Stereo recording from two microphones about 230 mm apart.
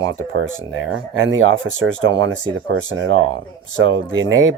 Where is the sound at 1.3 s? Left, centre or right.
Right.